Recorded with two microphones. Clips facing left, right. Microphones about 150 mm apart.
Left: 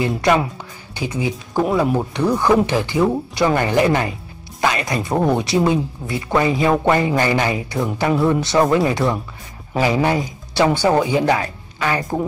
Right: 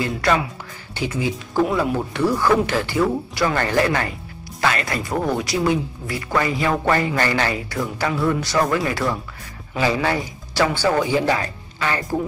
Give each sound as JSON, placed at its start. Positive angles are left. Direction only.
{"t": 0.9, "sound": "speech", "side_deg": 15}